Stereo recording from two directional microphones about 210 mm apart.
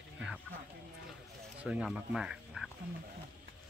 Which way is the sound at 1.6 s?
5° right (ahead or behind).